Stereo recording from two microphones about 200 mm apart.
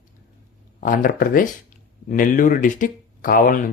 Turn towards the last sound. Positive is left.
turn(degrees=45)  # may be behind; listen again after turning